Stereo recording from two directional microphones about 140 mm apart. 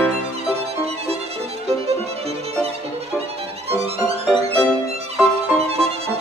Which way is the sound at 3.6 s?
45° right (ahead or behind).